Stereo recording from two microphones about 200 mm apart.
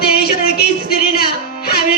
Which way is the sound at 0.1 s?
50° left (ahead or behind).